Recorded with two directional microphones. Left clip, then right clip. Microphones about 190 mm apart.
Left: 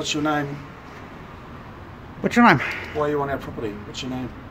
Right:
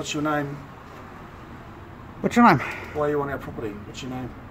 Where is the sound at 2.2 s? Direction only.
15° right (ahead or behind).